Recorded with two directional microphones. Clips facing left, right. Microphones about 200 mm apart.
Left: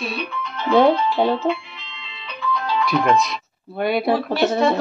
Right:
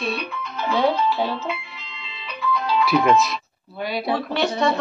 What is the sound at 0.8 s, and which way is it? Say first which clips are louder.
Speech: left 5 dB; 50° left (ahead or behind).